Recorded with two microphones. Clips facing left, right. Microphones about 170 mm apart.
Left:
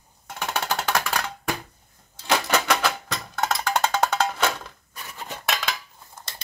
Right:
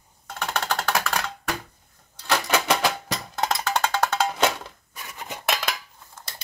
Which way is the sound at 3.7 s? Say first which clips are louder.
Left 3 dB; 10° left (ahead or behind).